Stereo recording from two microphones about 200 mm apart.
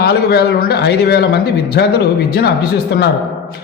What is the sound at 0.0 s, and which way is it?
A man's voice, 55° left (ahead or behind).